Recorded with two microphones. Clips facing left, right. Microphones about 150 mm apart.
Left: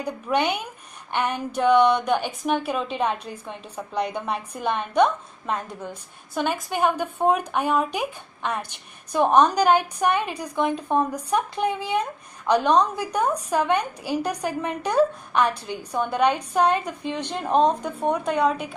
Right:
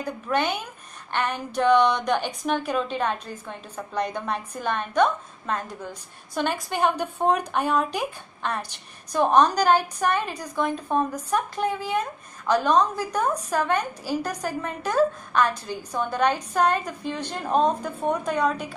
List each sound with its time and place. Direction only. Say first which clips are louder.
0.0 s a woman's voice: left 2 dB; 15° left (ahead or behind)